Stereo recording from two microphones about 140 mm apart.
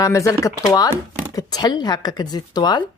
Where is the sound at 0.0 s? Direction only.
20° left (ahead or behind).